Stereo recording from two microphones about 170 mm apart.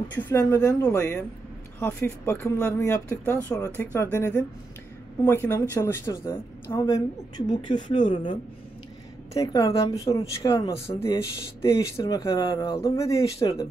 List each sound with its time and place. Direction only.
0.1 s a woman's voice: 10° left (ahead or behind)
10.6 s speech: 30° left (ahead or behind)
11.6 s speech: 20° left (ahead or behind)